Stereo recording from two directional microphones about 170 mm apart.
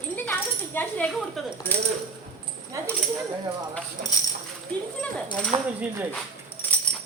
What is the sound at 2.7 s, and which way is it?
Speech, 20° right (ahead or behind).